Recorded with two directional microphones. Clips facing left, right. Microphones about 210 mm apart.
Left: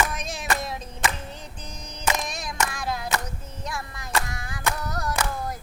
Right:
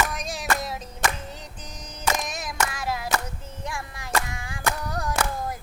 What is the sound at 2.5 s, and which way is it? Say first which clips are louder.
Child singing: even; 5° right (ahead or behind).